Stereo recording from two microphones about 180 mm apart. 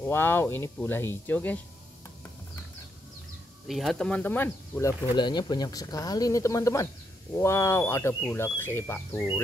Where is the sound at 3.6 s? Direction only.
Centre (ahead or behind).